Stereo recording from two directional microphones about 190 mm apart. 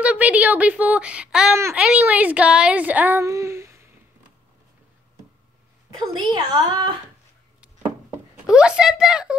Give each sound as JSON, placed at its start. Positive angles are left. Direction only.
{"t": 0.0, "sound": "speech", "side_deg": -5}
{"t": 6.1, "sound": "a woman's voice", "side_deg": -20}
{"t": 8.5, "sound": "speech", "side_deg": -5}